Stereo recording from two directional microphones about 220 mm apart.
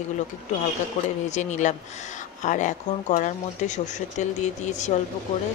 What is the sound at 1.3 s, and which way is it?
Speech, 30° left (ahead or behind).